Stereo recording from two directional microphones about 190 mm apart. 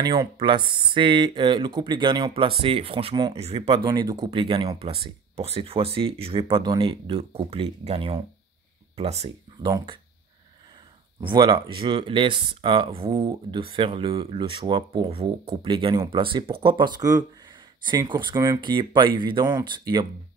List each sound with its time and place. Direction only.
0.0 s speech: 25° right (ahead or behind)
11.1 s speech: 25° right (ahead or behind)